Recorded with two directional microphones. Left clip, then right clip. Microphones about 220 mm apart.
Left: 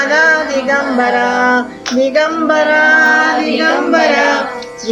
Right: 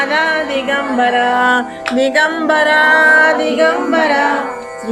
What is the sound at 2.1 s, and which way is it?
Music, 35° right (ahead or behind).